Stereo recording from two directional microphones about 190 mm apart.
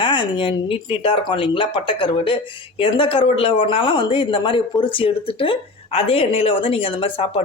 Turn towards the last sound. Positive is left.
turn(degrees=30)  # may be behind; listen again after turning